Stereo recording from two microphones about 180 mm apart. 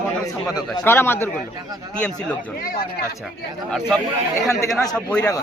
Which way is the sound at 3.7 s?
Centre (ahead or behind).